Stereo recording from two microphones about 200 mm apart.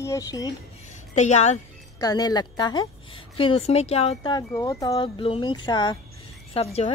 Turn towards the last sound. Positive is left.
turn(degrees=30)  # may be behind; listen again after turning